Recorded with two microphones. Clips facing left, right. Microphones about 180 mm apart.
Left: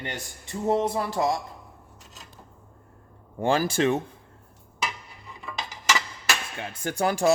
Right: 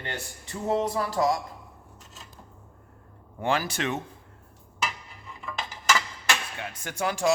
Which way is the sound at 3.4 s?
30° left (ahead or behind).